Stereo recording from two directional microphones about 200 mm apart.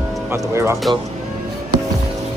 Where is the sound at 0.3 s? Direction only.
15° right (ahead or behind).